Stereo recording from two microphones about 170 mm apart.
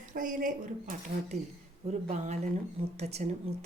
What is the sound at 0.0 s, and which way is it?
A woman's voice, 50° right (ahead or behind).